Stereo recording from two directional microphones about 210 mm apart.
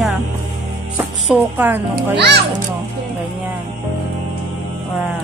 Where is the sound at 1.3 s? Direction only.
10° right (ahead or behind).